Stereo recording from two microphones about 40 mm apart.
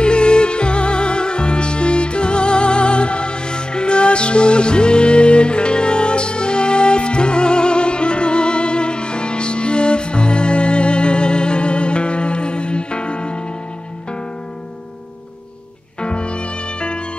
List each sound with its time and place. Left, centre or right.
0.0 s music: left
16.0 s music: left